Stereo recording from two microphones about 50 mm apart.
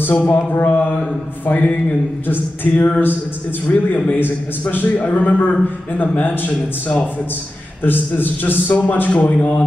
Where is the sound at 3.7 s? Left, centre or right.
Left.